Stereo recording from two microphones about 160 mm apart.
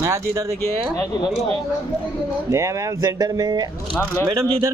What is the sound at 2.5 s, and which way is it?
Speech, 20° right (ahead or behind).